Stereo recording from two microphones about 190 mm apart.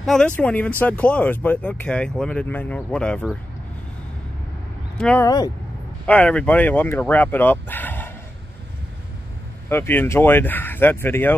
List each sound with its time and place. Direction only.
0.0 s speech: centre (ahead or behind)
4.9 s speech: 5° left (ahead or behind)
5.2 s speech: 20° left (ahead or behind)
6.0 s speech: 5° left (ahead or behind)
9.7 s speech: 10° left (ahead or behind)